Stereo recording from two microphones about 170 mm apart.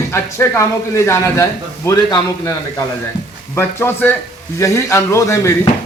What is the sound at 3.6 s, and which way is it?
A man's voice, 15° left (ahead or behind).